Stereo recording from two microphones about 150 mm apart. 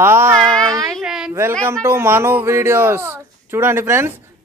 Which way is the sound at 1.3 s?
20° right (ahead or behind).